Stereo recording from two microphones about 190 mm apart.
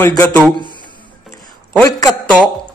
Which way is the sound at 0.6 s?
25° right (ahead or behind).